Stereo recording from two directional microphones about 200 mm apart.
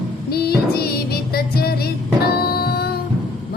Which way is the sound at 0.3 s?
50° left (ahead or behind).